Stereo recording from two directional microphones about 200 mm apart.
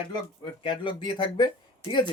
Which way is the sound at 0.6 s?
25° left (ahead or behind).